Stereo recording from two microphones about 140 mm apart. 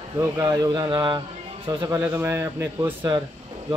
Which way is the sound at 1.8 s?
15° right (ahead or behind).